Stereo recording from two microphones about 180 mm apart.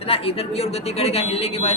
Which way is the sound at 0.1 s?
35° left (ahead or behind).